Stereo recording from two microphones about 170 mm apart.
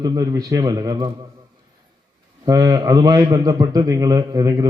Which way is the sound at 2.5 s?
20° right (ahead or behind).